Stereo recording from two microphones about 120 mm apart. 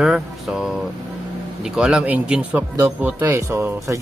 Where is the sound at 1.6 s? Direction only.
5° right (ahead or behind).